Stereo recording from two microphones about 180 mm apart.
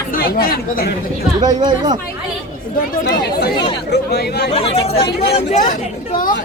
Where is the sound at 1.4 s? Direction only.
25° right (ahead or behind).